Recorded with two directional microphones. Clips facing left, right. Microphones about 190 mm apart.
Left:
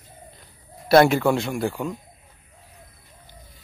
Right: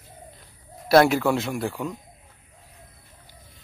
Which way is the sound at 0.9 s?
Centre (ahead or behind).